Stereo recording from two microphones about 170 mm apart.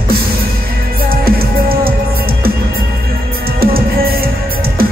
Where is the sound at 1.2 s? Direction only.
60° right (ahead or behind).